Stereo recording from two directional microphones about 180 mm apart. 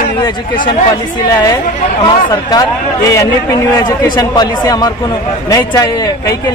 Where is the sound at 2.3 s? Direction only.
20° left (ahead or behind).